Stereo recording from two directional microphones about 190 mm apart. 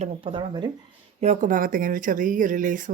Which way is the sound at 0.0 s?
25° right (ahead or behind).